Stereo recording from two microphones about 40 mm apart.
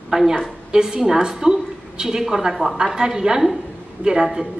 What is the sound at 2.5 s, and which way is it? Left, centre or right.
Speech, centre.